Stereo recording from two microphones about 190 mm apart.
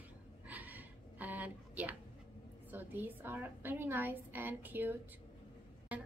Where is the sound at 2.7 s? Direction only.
10° right (ahead or behind).